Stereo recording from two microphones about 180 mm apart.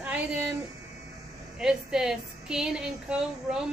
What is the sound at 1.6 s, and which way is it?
A woman's voice, 5° right (ahead or behind).